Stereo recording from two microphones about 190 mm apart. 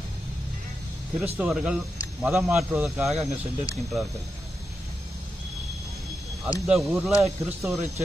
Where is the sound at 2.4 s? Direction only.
15° right (ahead or behind).